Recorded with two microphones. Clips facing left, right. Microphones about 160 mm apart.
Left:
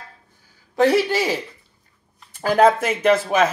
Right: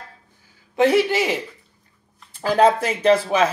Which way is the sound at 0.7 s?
20° right (ahead or behind).